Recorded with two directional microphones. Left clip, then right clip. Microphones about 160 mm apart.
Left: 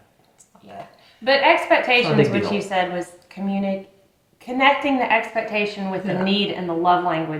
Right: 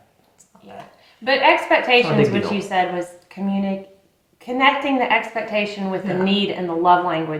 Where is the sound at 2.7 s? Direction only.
30° left (ahead or behind).